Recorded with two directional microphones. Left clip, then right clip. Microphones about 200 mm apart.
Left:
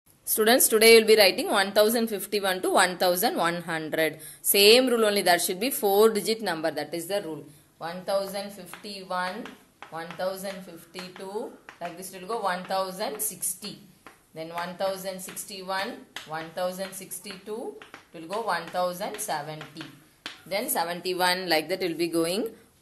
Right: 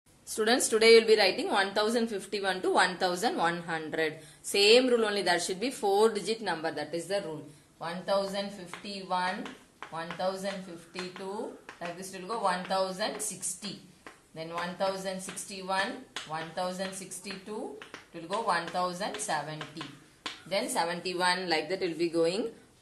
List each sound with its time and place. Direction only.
0.3 s a woman's voice: 45° left (ahead or behind)
9.9 s a woman's voice: 45° left (ahead or behind)
12.1 s a woman's voice: 45° left (ahead or behind)
16.3 s a woman's voice: 45° left (ahead or behind)
18.3 s a woman's voice: 45° left (ahead or behind)